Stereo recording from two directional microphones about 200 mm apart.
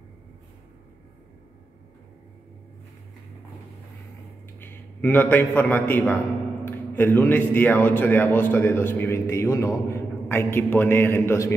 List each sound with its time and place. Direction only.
4.6 s a man's voice: 10° left (ahead or behind)